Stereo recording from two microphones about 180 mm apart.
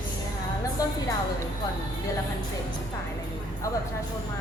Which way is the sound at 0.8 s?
20° left (ahead or behind).